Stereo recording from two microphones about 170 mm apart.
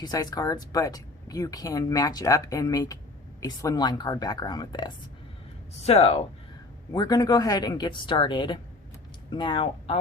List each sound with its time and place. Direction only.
0.0 s speech: 25° left (ahead or behind)
5.8 s speech: 35° left (ahead or behind)
6.9 s speech: 20° left (ahead or behind)